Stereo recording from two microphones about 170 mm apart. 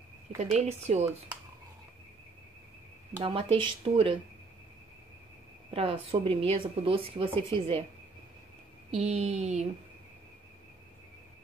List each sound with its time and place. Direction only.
0.4 s speech: 40° right (ahead or behind)
3.3 s speech: 30° right (ahead or behind)
5.7 s speech: 35° right (ahead or behind)
8.9 s speech: 40° right (ahead or behind)